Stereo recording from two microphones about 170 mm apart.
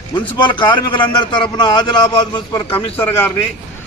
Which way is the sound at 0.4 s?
25° left (ahead or behind).